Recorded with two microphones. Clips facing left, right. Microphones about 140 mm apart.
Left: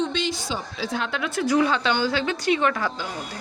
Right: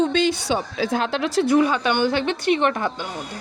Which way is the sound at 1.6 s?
15° right (ahead or behind).